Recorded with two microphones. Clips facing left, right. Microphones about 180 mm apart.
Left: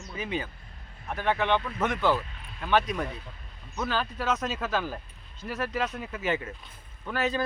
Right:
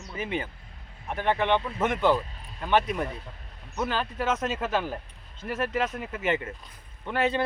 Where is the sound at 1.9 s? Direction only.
25° right (ahead or behind).